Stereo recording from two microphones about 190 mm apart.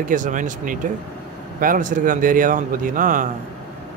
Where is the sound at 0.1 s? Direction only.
40° right (ahead or behind).